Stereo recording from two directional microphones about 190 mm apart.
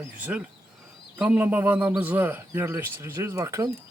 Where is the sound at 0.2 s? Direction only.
5° right (ahead or behind).